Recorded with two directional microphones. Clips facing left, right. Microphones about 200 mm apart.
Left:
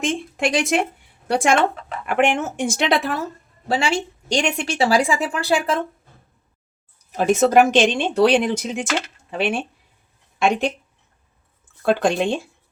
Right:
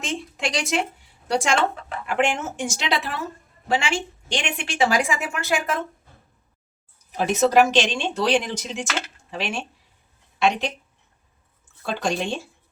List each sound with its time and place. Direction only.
0.0 s a woman's voice: 55° left (ahead or behind)
3.7 s a woman's voice: 35° left (ahead or behind)
7.2 s speech: 50° left (ahead or behind)
11.9 s speech: 55° left (ahead or behind)